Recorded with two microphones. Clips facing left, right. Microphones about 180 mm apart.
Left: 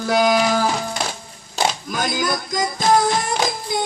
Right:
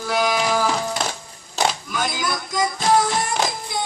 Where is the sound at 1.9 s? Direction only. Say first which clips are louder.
Left 3 dB; 40° left (ahead or behind).